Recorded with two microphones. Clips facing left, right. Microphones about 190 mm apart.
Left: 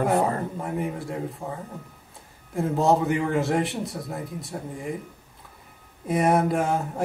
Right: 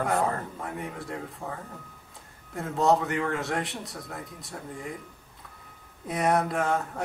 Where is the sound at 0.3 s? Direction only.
15° left (ahead or behind).